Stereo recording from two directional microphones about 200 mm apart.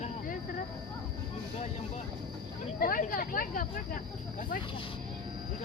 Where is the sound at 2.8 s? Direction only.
45° left (ahead or behind).